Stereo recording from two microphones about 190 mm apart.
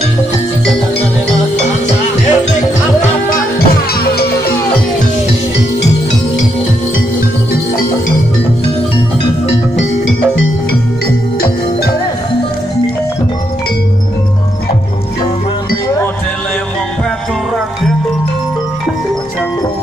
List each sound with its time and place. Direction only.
3.5 s music: 55° left (ahead or behind)